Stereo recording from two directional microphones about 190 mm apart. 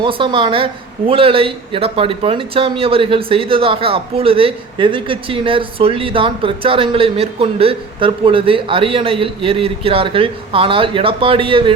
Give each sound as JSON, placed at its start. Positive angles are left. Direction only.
{"t": 0.0, "sound": "speech", "side_deg": -25}